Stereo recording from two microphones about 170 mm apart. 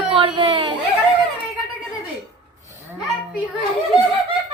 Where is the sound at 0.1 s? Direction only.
30° right (ahead or behind).